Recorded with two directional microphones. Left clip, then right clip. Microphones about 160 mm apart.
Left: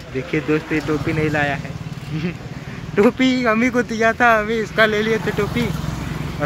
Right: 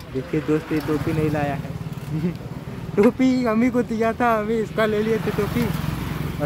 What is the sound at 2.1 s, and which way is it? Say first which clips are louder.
Speech: left 1 dB; 25° right (ahead or behind).